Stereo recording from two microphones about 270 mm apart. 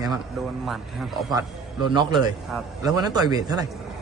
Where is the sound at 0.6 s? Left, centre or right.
Centre.